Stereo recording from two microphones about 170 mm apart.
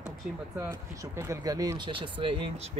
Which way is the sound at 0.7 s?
20° right (ahead or behind).